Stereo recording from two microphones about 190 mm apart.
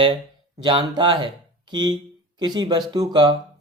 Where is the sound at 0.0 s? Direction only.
25° right (ahead or behind).